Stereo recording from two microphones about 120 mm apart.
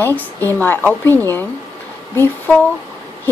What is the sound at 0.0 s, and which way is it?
Speech, 15° left (ahead or behind).